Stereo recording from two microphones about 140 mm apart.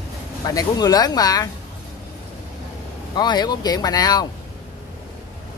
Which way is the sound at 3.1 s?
30° left (ahead or behind).